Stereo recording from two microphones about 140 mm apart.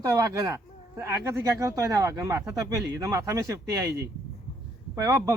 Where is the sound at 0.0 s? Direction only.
25° right (ahead or behind).